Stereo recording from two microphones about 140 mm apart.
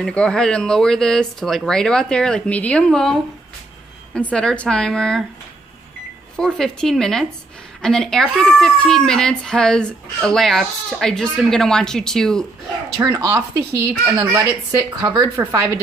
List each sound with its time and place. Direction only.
0.0 s speech: 5° left (ahead or behind)
6.3 s speech: 5° left (ahead or behind)
13.0 s speech: 25° right (ahead or behind)